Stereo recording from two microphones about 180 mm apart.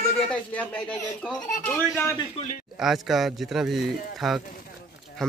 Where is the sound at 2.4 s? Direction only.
35° left (ahead or behind).